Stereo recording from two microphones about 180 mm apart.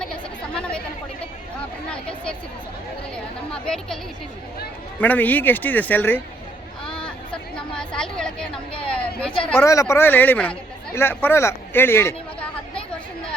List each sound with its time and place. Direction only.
0.5 s chatter: 5° left (ahead or behind)
1.9 s a sound: 5° left (ahead or behind)
3.5 s chatter: 5° left (ahead or behind)
4.9 s speech: 10° left (ahead or behind)
6.8 s hubbub: 5° left (ahead or behind)
7.5 s chatter: 5° left (ahead or behind)
8.7 s a sound: 30° left (ahead or behind)
9.6 s speech: 15° left (ahead or behind)